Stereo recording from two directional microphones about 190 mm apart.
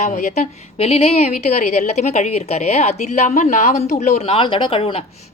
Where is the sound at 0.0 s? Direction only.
40° left (ahead or behind).